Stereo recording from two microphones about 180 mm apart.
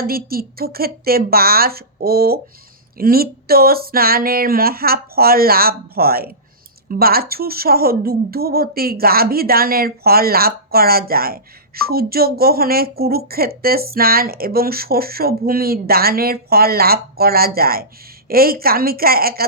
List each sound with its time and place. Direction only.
0.0 s speech: 55° right (ahead or behind)